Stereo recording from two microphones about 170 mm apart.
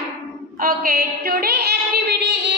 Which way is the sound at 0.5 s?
55° right (ahead or behind).